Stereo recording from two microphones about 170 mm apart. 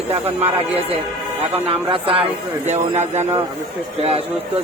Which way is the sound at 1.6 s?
35° right (ahead or behind).